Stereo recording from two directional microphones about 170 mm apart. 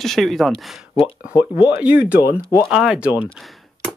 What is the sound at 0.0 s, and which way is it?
Speech, centre (ahead or behind).